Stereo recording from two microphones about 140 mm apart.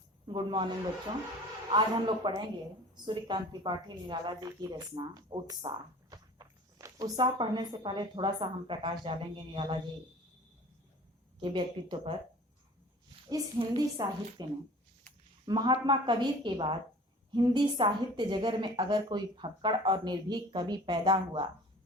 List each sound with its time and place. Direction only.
0.3 s a woman's voice: 35° right (ahead or behind)
1.7 s a woman's voice: 35° right (ahead or behind)
11.3 s a woman's voice: 35° right (ahead or behind)
13.2 s a woman's voice: 30° right (ahead or behind)
15.4 s a woman's voice: 30° right (ahead or behind)